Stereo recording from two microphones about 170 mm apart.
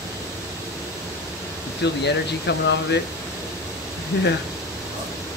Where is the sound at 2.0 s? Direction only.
85° left.